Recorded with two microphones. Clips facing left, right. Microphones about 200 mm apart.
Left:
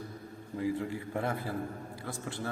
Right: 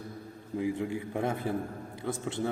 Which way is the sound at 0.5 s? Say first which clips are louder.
Right 2 dB; 15° right (ahead or behind).